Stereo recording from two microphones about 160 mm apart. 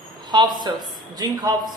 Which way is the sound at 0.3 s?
30° right (ahead or behind).